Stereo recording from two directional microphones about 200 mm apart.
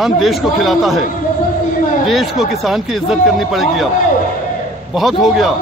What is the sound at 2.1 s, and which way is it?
Speech, centre (ahead or behind).